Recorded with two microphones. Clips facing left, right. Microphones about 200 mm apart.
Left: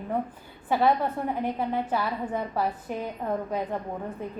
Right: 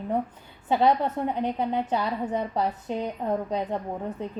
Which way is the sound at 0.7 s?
20° right (ahead or behind).